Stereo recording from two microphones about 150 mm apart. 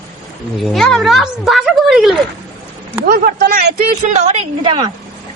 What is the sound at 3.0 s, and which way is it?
A woman's voice, 80° right.